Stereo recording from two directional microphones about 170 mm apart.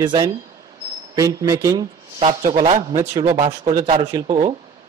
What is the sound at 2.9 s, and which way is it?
Speech, 25° right (ahead or behind).